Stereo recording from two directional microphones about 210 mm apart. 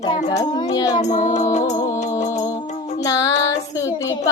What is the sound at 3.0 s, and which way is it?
Child singing, 15° left (ahead or behind).